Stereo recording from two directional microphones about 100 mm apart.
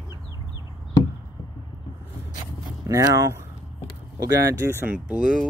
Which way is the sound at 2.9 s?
35° right (ahead or behind).